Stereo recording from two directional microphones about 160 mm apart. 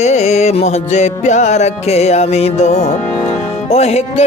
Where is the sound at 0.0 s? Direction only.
45° left (ahead or behind).